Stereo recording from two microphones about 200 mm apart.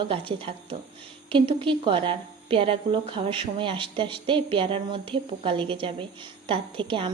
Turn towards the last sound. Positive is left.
turn(degrees=-25)  # may be behind; listen again after turning